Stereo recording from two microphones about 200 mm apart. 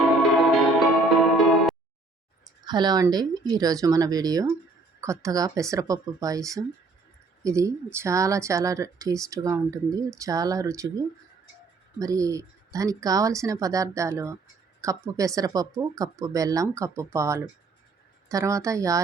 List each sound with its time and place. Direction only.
0.2 s music: centre (ahead or behind)
2.6 s a woman's voice: 20° right (ahead or behind)